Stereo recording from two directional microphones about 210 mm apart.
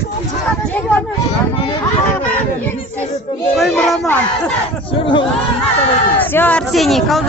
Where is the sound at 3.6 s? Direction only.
Centre (ahead or behind).